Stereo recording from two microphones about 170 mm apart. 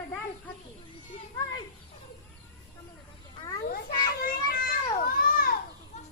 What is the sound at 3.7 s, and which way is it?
Children playing, 65° left (ahead or behind).